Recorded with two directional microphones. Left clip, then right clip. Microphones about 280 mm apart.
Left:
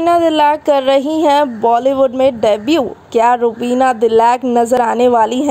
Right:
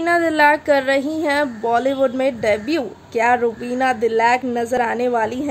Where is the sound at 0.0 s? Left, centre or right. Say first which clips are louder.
Left 4 dB; centre.